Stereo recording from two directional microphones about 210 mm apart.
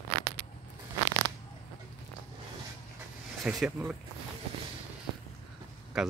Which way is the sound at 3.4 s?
5° right (ahead or behind).